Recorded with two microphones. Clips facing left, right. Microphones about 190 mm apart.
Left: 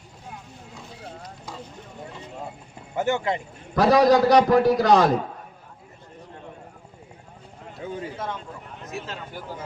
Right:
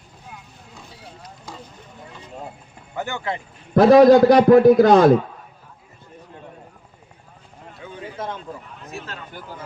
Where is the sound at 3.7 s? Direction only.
55° right (ahead or behind).